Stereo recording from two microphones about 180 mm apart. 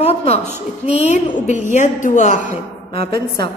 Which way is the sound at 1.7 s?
45° left (ahead or behind).